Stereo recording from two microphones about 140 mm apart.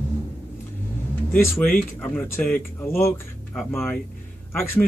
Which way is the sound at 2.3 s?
15° left (ahead or behind).